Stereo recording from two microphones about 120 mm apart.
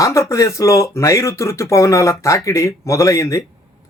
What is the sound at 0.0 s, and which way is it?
Speech, 25° left (ahead or behind).